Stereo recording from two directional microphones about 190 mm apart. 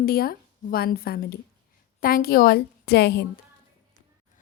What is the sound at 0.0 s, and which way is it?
A woman's voice, 50° left (ahead or behind).